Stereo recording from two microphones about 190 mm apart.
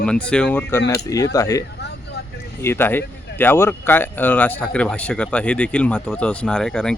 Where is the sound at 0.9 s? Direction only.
15° left (ahead or behind).